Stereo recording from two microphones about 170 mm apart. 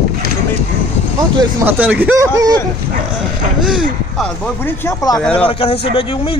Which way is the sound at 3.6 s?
5° right (ahead or behind).